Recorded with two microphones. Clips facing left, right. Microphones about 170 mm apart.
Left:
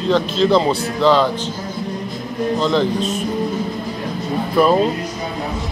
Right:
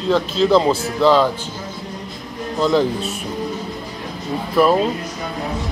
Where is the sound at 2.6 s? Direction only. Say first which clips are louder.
Right 3 dB; 5° right (ahead or behind).